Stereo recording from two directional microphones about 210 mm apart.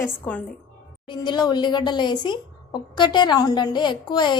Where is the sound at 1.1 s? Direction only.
20° left (ahead or behind).